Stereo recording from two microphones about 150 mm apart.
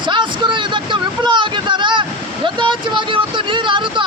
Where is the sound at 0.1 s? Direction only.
30° right (ahead or behind).